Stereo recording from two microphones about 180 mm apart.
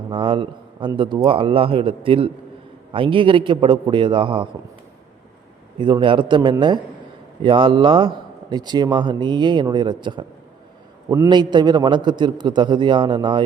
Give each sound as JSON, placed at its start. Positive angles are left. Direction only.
{"t": 0.1, "sound": "speech", "side_deg": -30}
{"t": 5.7, "sound": "speech", "side_deg": -25}